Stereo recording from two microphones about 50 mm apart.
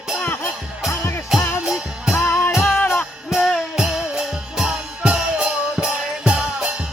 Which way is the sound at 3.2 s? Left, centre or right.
Centre.